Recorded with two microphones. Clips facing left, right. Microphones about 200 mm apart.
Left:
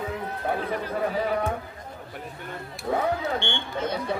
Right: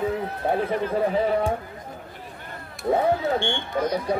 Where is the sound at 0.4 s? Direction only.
30° right (ahead or behind).